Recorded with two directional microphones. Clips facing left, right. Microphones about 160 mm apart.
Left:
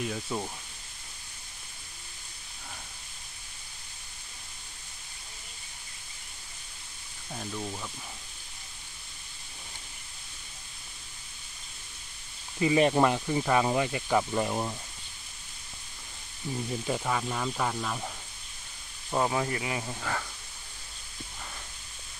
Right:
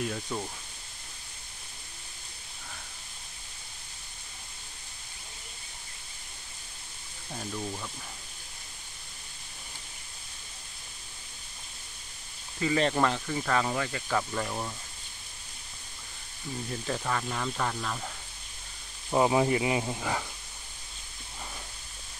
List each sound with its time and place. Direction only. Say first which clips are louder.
0.0 s speech: even; centre (ahead or behind)
7.3 s speech: even; centre (ahead or behind)
12.5 s speech: left 3 dB; 15° left (ahead or behind)
16.8 s speech: even; 10° left (ahead or behind)
19.0 s speech: right 4 dB; 15° right (ahead or behind)